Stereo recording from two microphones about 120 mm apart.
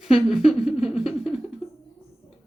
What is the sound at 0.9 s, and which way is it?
Music, 5° right (ahead or behind).